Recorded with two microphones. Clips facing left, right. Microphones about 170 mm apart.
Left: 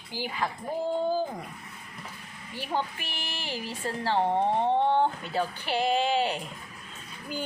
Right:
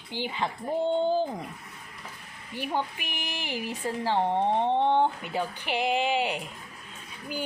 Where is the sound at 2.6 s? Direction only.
15° right (ahead or behind).